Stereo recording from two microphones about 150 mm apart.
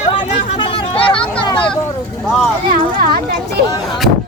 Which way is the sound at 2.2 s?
Centre (ahead or behind).